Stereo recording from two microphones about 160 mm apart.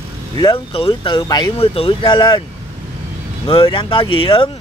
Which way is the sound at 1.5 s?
35° left (ahead or behind).